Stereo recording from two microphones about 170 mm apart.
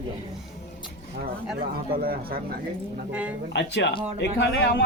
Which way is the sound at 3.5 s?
85° left.